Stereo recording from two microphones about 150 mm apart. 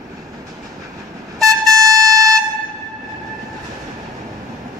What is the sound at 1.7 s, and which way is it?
Music, 20° right (ahead or behind).